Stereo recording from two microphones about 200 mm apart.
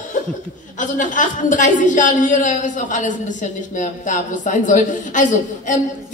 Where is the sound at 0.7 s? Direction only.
40° left (ahead or behind).